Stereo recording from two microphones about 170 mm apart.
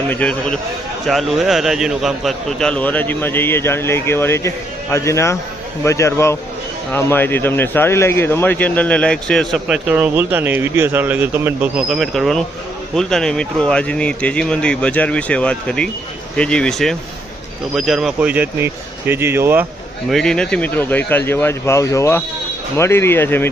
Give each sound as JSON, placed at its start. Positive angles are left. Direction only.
{"t": 0.1, "sound": "a man's voice", "side_deg": 5}
{"t": 11.9, "sound": "speech", "side_deg": 0}
{"t": 20.1, "sound": "a man's voice", "side_deg": 0}